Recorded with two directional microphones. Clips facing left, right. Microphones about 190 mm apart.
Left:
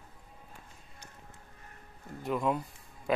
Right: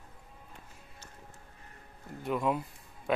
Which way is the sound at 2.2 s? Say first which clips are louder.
Even; centre (ahead or behind).